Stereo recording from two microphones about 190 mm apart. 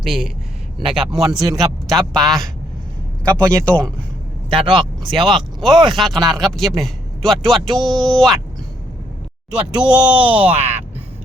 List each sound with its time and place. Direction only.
0.0 s a man's voice: centre (ahead or behind)
4.5 s speech: 25° right (ahead or behind)
5.5 s a man's voice: centre (ahead or behind)
9.5 s a man's voice: 5° right (ahead or behind)